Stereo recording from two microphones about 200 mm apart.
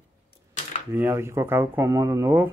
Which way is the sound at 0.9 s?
10° right (ahead or behind).